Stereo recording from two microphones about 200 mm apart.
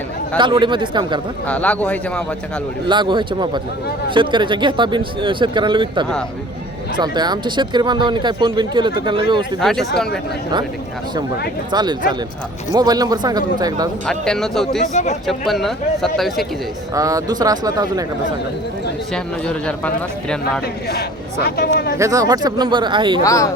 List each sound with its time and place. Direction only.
0.3 s speech: 25° right (ahead or behind)
1.5 s a man's voice: 5° left (ahead or behind)
2.8 s speech: 25° right (ahead or behind)
9.6 s a man's voice: centre (ahead or behind)
11.7 s speech: 20° right (ahead or behind)
14.1 s a man's voice: centre (ahead or behind)
14.9 s speech: 35° left (ahead or behind)
15.3 s a man's voice: centre (ahead or behind)
16.9 s speech: 15° right (ahead or behind)
19.1 s a man's voice: 5° left (ahead or behind)
21.4 s speech: 50° left (ahead or behind)
21.9 s speech: 15° right (ahead or behind)
23.2 s a man's voice: 15° left (ahead or behind)